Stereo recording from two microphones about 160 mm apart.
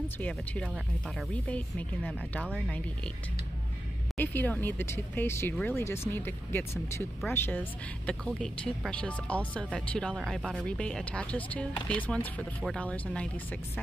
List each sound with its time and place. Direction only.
0.2 s speech: 10° left (ahead or behind)
4.2 s speech: 10° left (ahead or behind)